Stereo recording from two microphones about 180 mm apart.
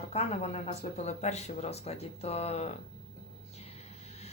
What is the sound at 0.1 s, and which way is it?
Speech, 35° left (ahead or behind).